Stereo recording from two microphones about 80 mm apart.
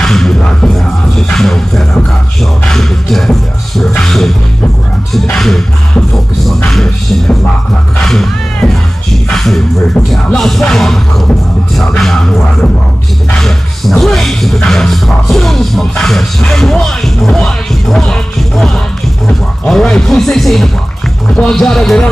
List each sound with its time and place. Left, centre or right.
0.0 s music: centre
5.3 s music: centre
6.7 s music: centre
13.4 s speech: centre
19.2 s music: centre
21.3 s speech: centre